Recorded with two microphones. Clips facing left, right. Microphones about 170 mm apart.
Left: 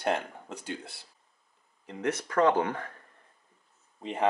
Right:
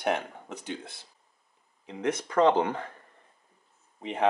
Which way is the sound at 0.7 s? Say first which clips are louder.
Right 1 dB; 20° right (ahead or behind).